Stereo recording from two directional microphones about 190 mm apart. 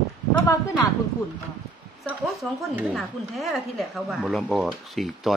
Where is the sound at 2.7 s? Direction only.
Centre (ahead or behind).